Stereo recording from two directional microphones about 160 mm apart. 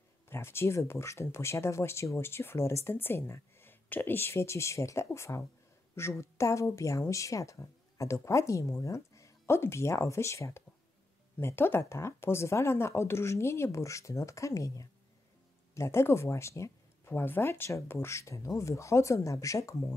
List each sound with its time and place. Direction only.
0.3 s speech: 15° left (ahead or behind)